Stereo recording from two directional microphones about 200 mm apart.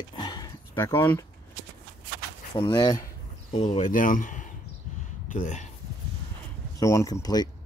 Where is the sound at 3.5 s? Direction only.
35° left (ahead or behind).